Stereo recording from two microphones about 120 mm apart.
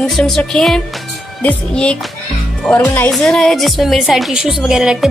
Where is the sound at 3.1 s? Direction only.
Centre (ahead or behind).